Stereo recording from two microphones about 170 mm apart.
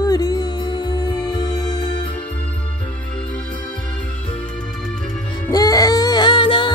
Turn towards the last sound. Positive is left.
turn(degrees=30)  # may be behind; listen again after turning